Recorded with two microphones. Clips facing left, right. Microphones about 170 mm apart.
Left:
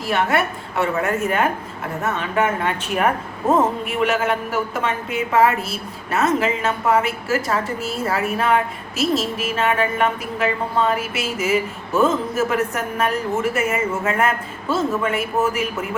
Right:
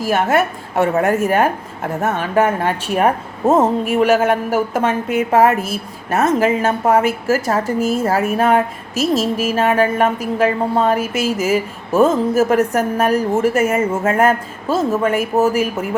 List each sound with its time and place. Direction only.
0.1 s a woman's voice: 45° right (ahead or behind)